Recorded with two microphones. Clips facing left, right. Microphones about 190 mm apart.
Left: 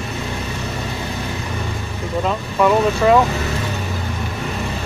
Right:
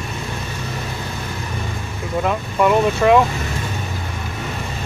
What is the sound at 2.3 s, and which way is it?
Vehicle, 5° right (ahead or behind).